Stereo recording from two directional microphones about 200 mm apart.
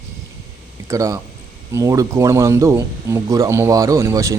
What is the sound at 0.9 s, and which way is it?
Speech, 15° right (ahead or behind).